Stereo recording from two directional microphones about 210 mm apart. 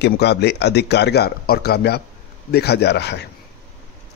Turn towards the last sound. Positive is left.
turn(degrees=50)  # may be behind; listen again after turning